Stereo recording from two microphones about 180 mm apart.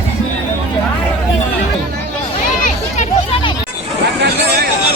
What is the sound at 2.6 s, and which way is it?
Children playing, 40° left (ahead or behind).